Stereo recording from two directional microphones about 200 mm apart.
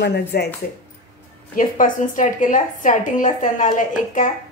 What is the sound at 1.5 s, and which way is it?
A woman's voice, 40° left (ahead or behind).